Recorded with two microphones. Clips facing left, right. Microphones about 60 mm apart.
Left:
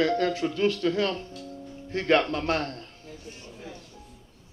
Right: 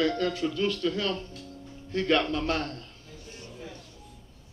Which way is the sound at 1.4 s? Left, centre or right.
Left.